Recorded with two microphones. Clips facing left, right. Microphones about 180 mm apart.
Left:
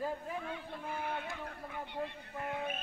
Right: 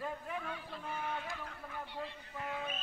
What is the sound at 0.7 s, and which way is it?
A man's voice, 55° left (ahead or behind).